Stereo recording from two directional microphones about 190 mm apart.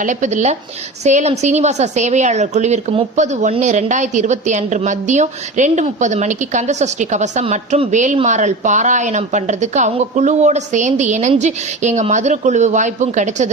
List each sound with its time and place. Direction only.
0.0 s a woman's voice: 40° right (ahead or behind)